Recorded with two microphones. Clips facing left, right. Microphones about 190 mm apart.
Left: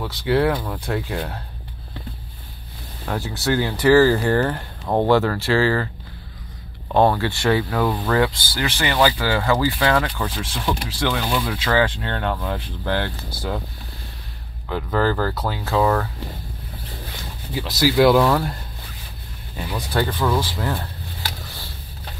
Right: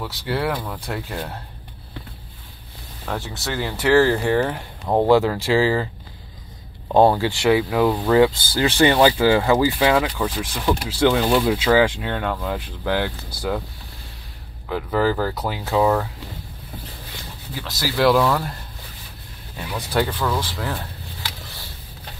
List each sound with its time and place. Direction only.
0.0 s speech: centre (ahead or behind)
3.1 s speech: centre (ahead or behind)
6.9 s speech: 15° right (ahead or behind)
8.6 s speech: 30° right (ahead or behind); by 13.6 s 10° right (ahead or behind)
14.7 s speech: 5° right (ahead or behind)
17.8 s speech: 5° left (ahead or behind)
19.5 s speech: centre (ahead or behind)